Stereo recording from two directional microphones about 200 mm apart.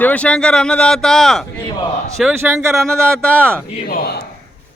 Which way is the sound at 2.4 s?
10° right (ahead or behind).